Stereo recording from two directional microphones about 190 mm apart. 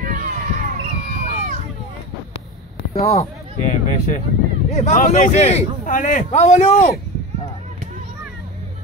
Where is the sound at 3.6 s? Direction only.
40° left (ahead or behind).